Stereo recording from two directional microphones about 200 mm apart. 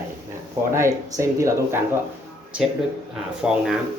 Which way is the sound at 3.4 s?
5° right (ahead or behind).